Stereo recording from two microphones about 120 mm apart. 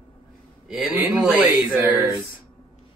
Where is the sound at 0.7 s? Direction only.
10° right (ahead or behind).